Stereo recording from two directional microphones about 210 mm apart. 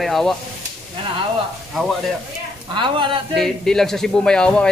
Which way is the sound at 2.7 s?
25° right (ahead or behind).